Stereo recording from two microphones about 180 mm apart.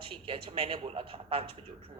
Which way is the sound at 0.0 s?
30° right (ahead or behind).